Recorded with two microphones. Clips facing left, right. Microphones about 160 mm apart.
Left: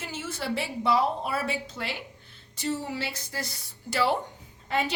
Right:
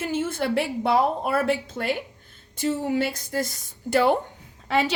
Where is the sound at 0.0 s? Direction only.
55° right (ahead or behind).